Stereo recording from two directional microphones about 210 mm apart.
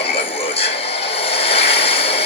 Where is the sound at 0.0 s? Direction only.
30° left (ahead or behind).